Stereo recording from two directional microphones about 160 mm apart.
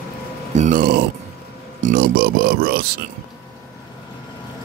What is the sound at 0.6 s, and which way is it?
Speech, 60° right (ahead or behind).